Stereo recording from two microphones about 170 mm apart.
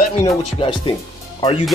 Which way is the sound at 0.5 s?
30° left (ahead or behind).